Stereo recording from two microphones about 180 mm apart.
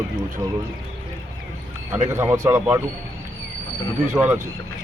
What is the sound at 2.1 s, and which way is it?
Speech, 15° right (ahead or behind).